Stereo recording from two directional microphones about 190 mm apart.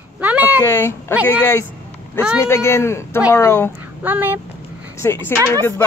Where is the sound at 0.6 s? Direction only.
15° left (ahead or behind).